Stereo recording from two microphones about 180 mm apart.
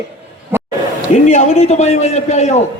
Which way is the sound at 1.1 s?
40° left (ahead or behind).